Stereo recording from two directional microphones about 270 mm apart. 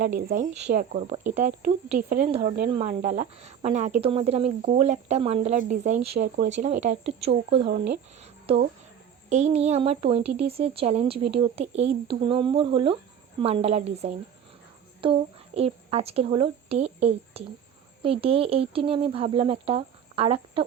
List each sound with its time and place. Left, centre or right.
0.0 s speech: right
8.5 s a woman's voice: right